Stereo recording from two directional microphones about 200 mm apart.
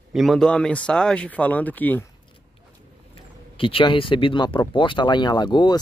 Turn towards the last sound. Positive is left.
turn(degrees=20)  # may be behind; listen again after turning